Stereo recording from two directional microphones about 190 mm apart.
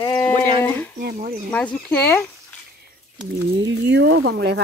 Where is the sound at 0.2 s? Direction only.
10° left (ahead or behind).